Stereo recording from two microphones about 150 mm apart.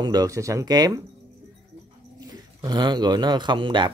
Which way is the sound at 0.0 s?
25° right (ahead or behind).